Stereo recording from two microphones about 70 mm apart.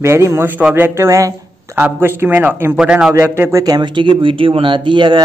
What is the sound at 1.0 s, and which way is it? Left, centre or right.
Speech, right.